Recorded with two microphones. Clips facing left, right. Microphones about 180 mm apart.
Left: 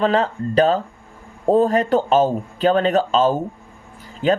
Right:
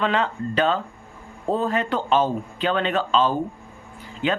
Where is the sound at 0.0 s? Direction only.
40° left (ahead or behind).